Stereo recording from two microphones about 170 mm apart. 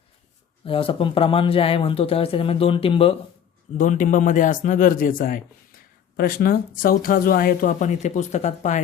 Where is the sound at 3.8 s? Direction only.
50° left (ahead or behind).